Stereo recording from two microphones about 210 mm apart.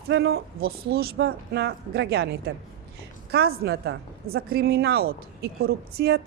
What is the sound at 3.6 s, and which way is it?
A woman's voice, 50° right (ahead or behind).